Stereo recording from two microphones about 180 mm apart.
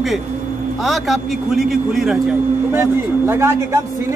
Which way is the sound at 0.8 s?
Centre (ahead or behind).